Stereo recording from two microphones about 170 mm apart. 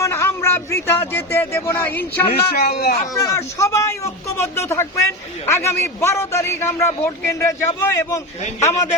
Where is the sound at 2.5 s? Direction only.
55° left (ahead or behind).